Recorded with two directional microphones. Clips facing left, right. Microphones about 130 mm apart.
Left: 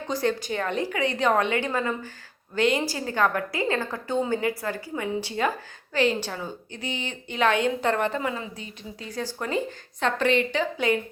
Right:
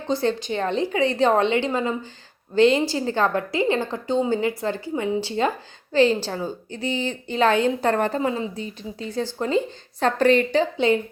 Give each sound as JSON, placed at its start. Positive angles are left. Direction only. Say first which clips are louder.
{"t": 0.1, "sound": "a woman's voice", "louder": "right 3 dB", "side_deg": -30}
{"t": 10.0, "sound": "a woman's voice", "louder": "right 5 dB", "side_deg": -40}